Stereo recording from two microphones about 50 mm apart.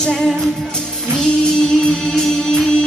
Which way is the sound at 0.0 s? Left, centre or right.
Centre.